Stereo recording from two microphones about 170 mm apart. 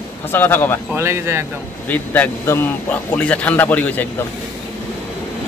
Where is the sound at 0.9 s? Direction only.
15° right (ahead or behind).